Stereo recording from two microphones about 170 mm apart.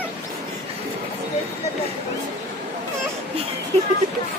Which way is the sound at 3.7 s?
40° right (ahead or behind).